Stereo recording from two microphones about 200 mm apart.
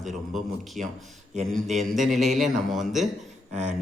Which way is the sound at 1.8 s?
Centre (ahead or behind).